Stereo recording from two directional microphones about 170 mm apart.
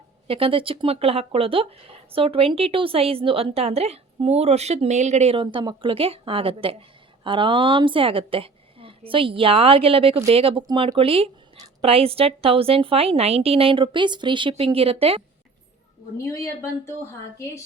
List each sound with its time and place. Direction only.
0.3 s a woman's voice: 30° right (ahead or behind)
16.1 s speech: 15° left (ahead or behind)